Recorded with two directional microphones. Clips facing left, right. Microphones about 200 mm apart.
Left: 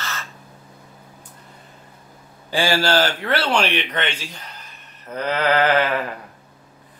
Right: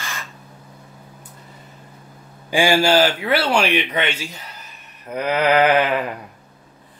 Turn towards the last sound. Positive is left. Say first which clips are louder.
# right 2 dB
turn(degrees=-15)  # may be behind; listen again after turning